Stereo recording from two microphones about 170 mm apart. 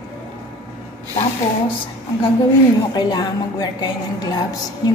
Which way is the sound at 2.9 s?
25° left (ahead or behind).